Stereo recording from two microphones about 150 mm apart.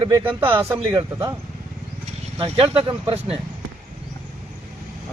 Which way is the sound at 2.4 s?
40° right (ahead or behind).